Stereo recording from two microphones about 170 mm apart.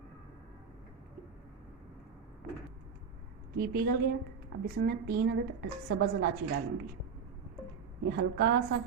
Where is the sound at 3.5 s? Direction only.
65° right (ahead or behind).